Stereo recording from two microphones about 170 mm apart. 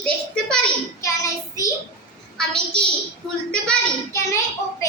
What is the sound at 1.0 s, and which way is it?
Child singing, 20° left (ahead or behind).